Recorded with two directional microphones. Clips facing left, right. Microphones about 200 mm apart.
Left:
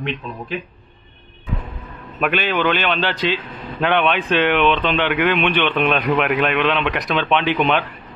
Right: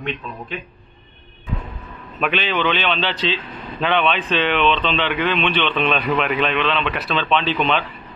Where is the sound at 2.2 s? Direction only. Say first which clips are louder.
Left 2 dB; 10° left (ahead or behind).